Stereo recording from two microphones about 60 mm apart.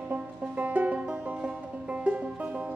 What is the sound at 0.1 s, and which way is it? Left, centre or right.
Music, right.